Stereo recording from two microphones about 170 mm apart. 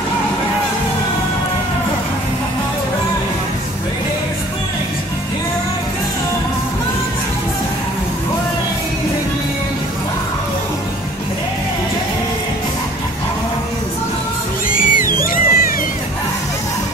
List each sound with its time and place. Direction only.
14.7 s music: 55° left (ahead or behind)